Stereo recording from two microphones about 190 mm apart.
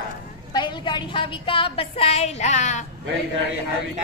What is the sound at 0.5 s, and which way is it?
A woman's voice, 25° left (ahead or behind).